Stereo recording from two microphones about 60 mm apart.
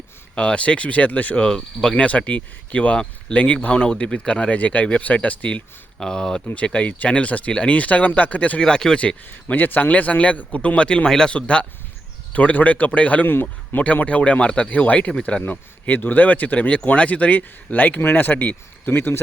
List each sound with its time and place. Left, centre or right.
0.3 s speech: centre
1.5 s speech: centre
2.0 s speech: left
3.8 s speech: centre
8.6 s speech: centre
9.2 s speech: left
13.3 s speech: left
13.8 s speech: left